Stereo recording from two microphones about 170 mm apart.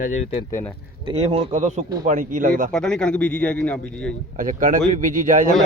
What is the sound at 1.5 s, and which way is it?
Speech, 45° right (ahead or behind).